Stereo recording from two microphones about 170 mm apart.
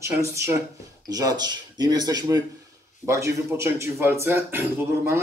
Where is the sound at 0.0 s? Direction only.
15° right (ahead or behind).